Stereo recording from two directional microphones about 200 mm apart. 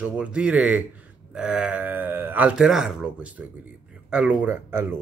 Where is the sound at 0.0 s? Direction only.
5° right (ahead or behind).